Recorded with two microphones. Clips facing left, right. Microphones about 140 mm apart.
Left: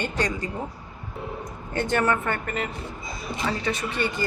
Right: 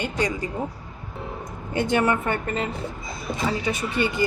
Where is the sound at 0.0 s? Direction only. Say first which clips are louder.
Right 1 dB; 10° right (ahead or behind).